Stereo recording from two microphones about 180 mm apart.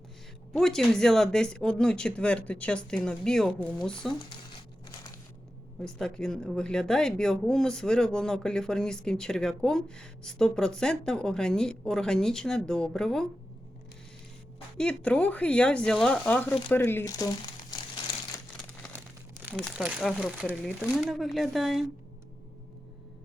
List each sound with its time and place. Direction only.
0.5 s speech: centre (ahead or behind)
4.3 s crumpling: 25° left (ahead or behind)
5.8 s speech: 5° left (ahead or behind)
14.8 s speech: 5° left (ahead or behind); by 18.2 s 25° left (ahead or behind)
18.9 s crumpling: 10° right (ahead or behind)
19.5 s speech: centre (ahead or behind)